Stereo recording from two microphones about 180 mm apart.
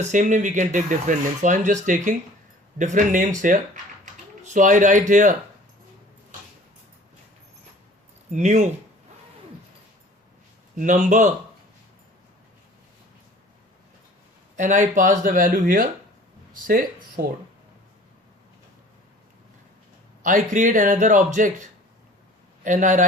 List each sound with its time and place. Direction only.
0.0 s speech: 40° right (ahead or behind)
4.0 s typing: 45° right (ahead or behind)
8.3 s speech: 40° right (ahead or behind)
10.8 s speech: 45° right (ahead or behind)
14.5 s speech: 45° right (ahead or behind)
20.2 s speech: 45° right (ahead or behind)
22.6 s speech: 45° right (ahead or behind)